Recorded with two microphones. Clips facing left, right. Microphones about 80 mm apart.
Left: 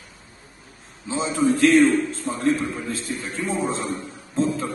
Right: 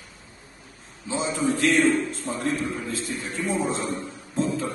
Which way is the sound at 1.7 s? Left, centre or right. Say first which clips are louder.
Left 4 dB; left.